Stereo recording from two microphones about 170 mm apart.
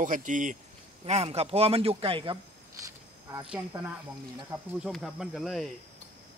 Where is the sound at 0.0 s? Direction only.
50° right (ahead or behind).